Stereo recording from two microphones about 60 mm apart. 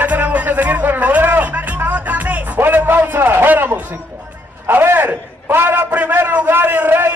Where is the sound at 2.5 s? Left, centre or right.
Right.